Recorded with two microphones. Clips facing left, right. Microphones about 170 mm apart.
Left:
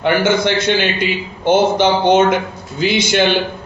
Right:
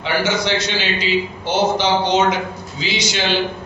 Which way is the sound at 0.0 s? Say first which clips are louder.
Left 5 dB; 55° left (ahead or behind).